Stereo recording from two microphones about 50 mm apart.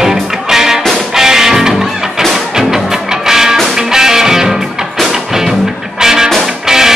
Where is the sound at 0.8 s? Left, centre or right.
Centre.